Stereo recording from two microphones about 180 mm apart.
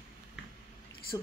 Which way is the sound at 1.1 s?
20° left (ahead or behind).